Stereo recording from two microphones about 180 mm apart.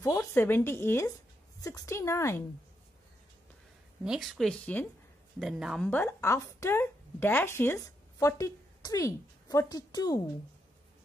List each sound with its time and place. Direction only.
0.0 s speech: 15° left (ahead or behind)
4.0 s speech: centre (ahead or behind)
5.9 s speech: 10° left (ahead or behind)